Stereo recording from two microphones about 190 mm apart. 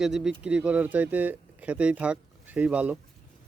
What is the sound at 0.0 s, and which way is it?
Speech, 5° right (ahead or behind).